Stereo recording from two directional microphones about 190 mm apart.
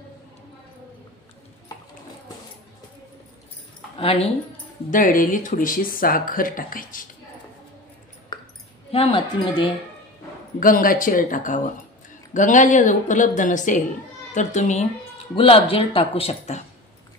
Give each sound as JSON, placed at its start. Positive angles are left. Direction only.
{"t": 4.0, "sound": "a woman's voice", "side_deg": 30}
{"t": 4.9, "sound": "speech", "side_deg": 45}
{"t": 8.3, "sound": "a sound", "side_deg": 20}
{"t": 8.9, "sound": "speech", "side_deg": 30}
{"t": 10.6, "sound": "a woman's voice", "side_deg": 45}